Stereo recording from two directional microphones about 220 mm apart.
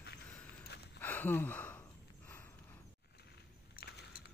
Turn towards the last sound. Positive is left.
turn(degrees=45)  # may be behind; listen again after turning